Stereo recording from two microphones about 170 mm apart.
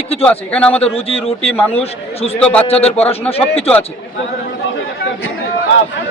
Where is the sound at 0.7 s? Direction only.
35° left (ahead or behind).